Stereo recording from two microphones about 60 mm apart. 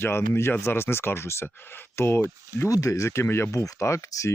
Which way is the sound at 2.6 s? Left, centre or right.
Left.